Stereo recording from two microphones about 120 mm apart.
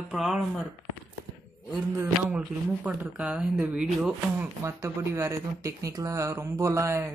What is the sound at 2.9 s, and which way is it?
Speech, 10° right (ahead or behind).